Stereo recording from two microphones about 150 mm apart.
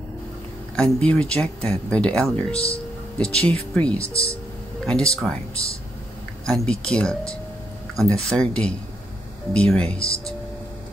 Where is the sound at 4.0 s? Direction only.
40° left (ahead or behind).